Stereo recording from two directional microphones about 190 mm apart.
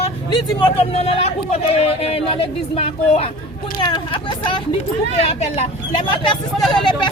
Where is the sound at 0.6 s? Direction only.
30° left (ahead or behind).